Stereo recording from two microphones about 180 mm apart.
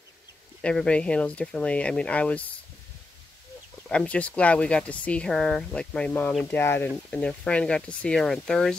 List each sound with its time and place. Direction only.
0.6 s speech: 5° left (ahead or behind)
3.9 s speech: 5° left (ahead or behind)